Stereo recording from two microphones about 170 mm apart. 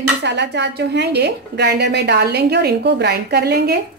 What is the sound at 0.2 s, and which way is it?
A woman's voice, 90° right.